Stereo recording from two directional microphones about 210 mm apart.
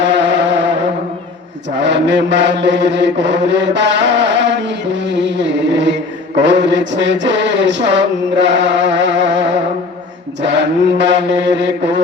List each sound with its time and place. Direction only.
0.0 s music: 55° right (ahead or behind)
1.8 s mantra: 60° right (ahead or behind)